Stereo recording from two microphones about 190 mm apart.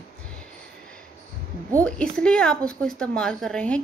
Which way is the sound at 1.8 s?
5° left (ahead or behind).